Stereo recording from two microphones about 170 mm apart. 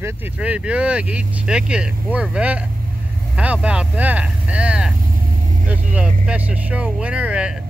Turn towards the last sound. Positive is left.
turn(degrees=-5)  # may be behind; listen again after turning